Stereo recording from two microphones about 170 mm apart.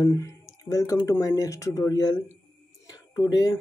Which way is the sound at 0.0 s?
15° left (ahead or behind).